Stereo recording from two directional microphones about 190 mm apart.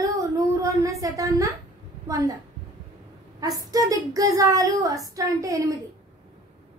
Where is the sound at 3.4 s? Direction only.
20° right (ahead or behind).